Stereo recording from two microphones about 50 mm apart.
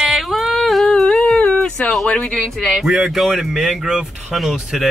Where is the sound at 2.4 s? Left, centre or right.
Centre.